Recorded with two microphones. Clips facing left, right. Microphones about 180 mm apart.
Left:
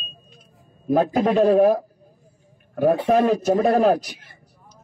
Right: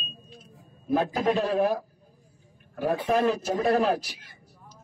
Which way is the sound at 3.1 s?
50° left (ahead or behind).